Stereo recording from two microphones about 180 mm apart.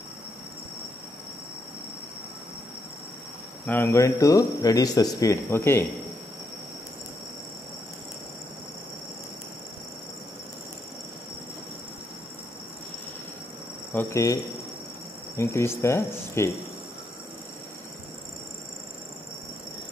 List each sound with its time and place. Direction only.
3.6 s speech: 10° left (ahead or behind)
13.9 s speech: 15° left (ahead or behind)